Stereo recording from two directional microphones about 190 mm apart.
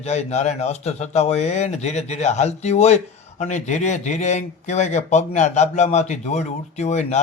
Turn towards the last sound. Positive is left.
turn(degrees=35)  # may be behind; listen again after turning